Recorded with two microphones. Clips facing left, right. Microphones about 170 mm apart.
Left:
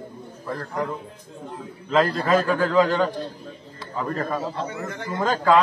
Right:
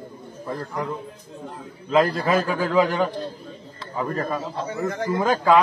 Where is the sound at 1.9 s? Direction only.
10° right (ahead or behind).